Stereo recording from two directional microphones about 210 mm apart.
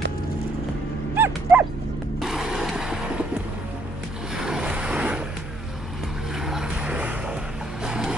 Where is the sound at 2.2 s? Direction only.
Centre (ahead or behind).